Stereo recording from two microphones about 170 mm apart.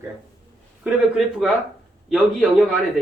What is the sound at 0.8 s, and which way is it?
Speech, centre (ahead or behind).